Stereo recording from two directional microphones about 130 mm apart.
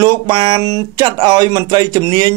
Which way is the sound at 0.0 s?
30° right (ahead or behind).